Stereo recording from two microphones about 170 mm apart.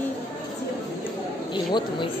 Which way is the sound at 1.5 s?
25° left (ahead or behind).